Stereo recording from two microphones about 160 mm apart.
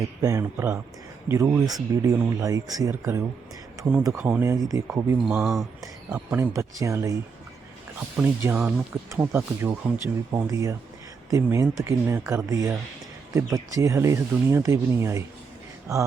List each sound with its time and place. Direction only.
0.2 s speech: 20° right (ahead or behind)
5.3 s speech: 5° right (ahead or behind)
5.8 s speech: 15° right (ahead or behind)
8.2 s speech: 15° right (ahead or behind)